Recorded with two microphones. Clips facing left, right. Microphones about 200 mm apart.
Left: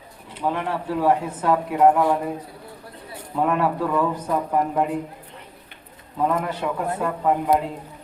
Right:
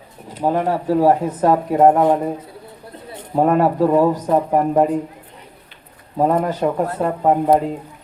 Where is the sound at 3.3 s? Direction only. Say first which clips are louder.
Right 6 dB; 40° right (ahead or behind).